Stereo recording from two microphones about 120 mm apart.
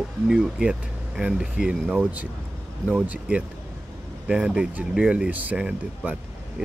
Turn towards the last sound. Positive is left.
turn(degrees=-10)  # may be behind; listen again after turning